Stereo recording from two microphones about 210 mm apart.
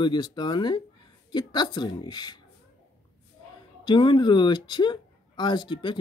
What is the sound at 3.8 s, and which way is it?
Speech, 20° left (ahead or behind).